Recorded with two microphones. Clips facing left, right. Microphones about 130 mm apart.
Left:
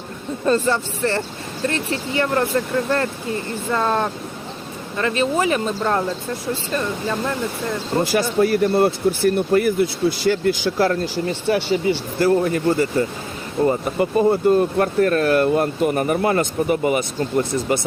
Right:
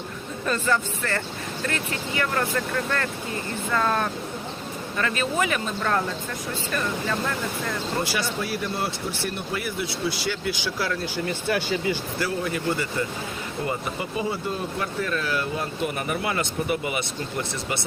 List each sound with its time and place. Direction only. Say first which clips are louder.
0.4 s speech: left 6 dB; 30° left (ahead or behind)
3.7 s speech: left 4 dB; 25° left (ahead or behind)
8.0 s speech: left 10 dB; 45° left (ahead or behind)
11.3 s speech: left 6 dB; 30° left (ahead or behind)
12.2 s speech: left 11 dB; 45° left (ahead or behind)
14.0 s speech: left 16 dB; 55° left (ahead or behind)